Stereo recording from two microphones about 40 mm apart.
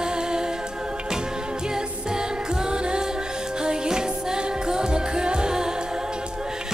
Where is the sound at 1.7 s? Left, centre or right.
Centre.